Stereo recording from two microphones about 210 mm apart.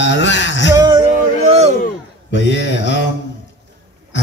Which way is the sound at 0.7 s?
20° right (ahead or behind).